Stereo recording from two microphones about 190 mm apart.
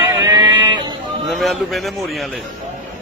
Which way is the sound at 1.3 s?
Centre (ahead or behind).